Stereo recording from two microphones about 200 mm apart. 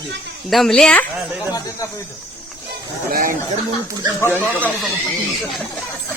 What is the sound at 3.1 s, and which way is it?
Speech, 45° right (ahead or behind).